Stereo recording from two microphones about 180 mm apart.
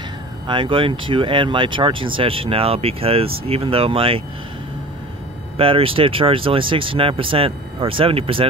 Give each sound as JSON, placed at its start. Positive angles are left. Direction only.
{"t": 0.5, "sound": "speech", "side_deg": -25}
{"t": 5.6, "sound": "speech", "side_deg": -30}